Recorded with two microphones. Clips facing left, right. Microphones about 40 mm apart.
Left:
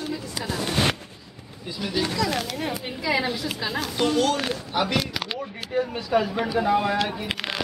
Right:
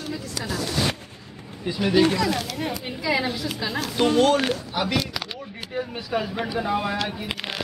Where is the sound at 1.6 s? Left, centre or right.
Right.